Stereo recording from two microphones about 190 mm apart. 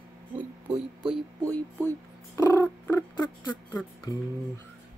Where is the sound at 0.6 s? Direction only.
30° right (ahead or behind).